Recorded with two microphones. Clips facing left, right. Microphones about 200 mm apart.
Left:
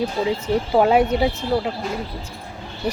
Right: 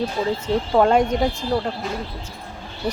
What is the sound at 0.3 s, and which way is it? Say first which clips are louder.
Speech: left 1 dB; 10° left (ahead or behind).